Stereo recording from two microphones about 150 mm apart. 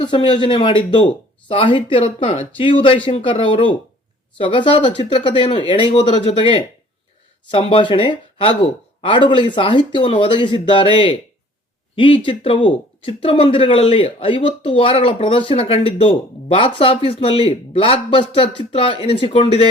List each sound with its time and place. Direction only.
0.0 s speech: 30° left (ahead or behind)